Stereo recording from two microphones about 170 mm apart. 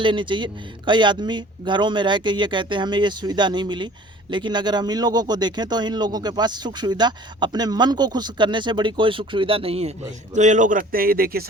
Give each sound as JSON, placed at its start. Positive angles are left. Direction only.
{"t": 0.0, "sound": "speech", "side_deg": -30}
{"t": 10.3, "sound": "speech", "side_deg": -45}